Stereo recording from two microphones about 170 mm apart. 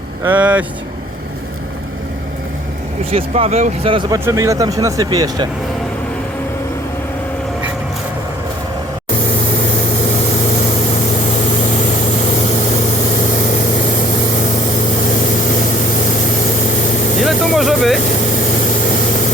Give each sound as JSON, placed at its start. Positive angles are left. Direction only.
{"t": 0.3, "sound": "speech", "side_deg": -10}
{"t": 3.1, "sound": "speech", "side_deg": -35}
{"t": 4.1, "sound": "speech", "side_deg": -20}
{"t": 17.2, "sound": "vehicle", "side_deg": 0}